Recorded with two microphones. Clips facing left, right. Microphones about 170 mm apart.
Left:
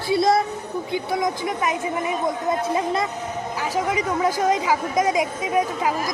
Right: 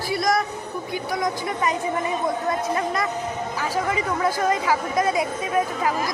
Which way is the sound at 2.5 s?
20° left (ahead or behind).